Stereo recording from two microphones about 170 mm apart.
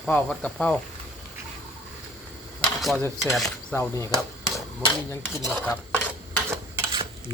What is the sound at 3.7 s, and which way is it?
Speech, 15° left (ahead or behind).